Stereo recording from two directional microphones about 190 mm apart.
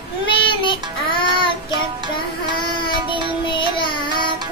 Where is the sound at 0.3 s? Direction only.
25° left (ahead or behind).